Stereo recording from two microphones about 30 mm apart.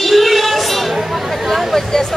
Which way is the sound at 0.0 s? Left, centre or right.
Centre.